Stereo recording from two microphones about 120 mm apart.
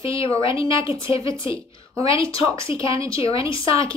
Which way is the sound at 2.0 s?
50° left (ahead or behind).